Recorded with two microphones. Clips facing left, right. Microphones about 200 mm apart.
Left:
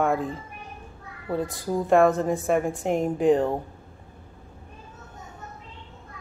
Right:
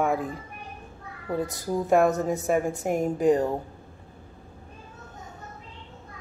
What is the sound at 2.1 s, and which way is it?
Speech, 5° right (ahead or behind).